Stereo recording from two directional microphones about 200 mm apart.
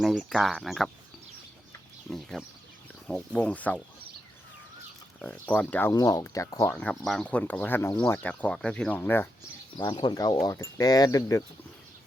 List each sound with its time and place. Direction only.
0.0 s speech: centre (ahead or behind)
2.0 s speech: centre (ahead or behind)
5.2 s speech: 5° left (ahead or behind)
6.7 s speech: 5° left (ahead or behind)
9.7 s speech: 25° left (ahead or behind)